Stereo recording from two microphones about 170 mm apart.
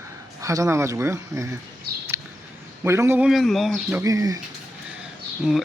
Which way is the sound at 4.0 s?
20° right (ahead or behind).